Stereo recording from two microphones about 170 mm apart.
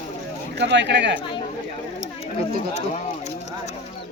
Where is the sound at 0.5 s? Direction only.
90° right.